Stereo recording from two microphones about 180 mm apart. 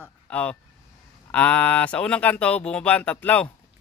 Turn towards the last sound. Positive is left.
turn(degrees=10)  # may be behind; listen again after turning